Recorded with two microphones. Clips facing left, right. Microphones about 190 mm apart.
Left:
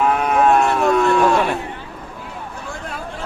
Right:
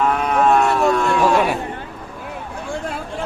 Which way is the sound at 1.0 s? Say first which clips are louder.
Left 1 dB; centre (ahead or behind).